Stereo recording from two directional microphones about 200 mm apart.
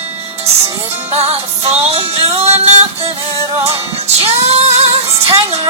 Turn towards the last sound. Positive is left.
turn(degrees=-30)  # may be behind; listen again after turning